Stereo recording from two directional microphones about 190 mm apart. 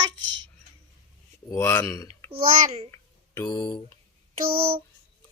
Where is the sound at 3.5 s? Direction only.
25° left (ahead or behind).